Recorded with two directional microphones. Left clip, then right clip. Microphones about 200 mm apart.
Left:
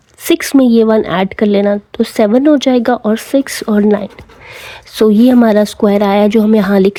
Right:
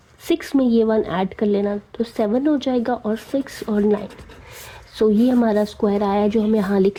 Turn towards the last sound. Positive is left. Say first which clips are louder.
# left 8 dB
turn(degrees=35)  # may be behind; listen again after turning